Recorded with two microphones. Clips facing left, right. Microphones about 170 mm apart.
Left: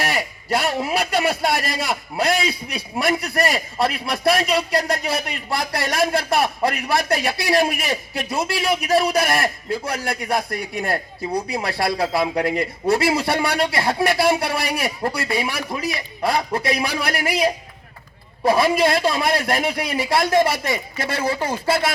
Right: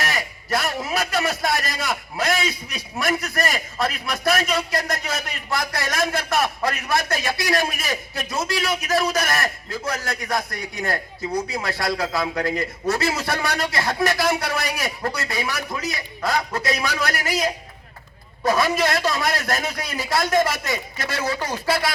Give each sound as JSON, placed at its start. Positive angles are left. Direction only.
{"t": 0.0, "sound": "a man's voice", "side_deg": 30}
{"t": 11.5, "sound": "a man's voice", "side_deg": 30}